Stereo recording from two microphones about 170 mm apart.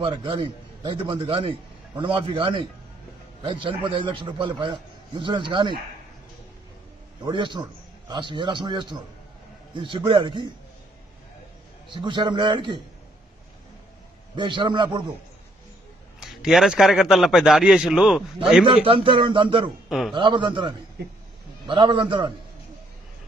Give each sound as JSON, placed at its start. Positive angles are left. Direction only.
{"t": 0.0, "sound": "a man's voice", "side_deg": -30}
{"t": 7.2, "sound": "a man's voice", "side_deg": -25}
{"t": 11.9, "sound": "a man's voice", "side_deg": -25}
{"t": 14.3, "sound": "a man's voice", "side_deg": -30}
{"t": 16.2, "sound": "a man's voice", "side_deg": 0}
{"t": 18.9, "sound": "a man's voice", "side_deg": -30}
{"t": 21.0, "sound": "speech", "side_deg": -65}
{"t": 21.6, "sound": "a man's voice", "side_deg": -30}